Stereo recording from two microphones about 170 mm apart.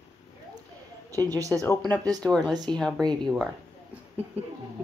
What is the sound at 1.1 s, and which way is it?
Speech, 20° right (ahead or behind).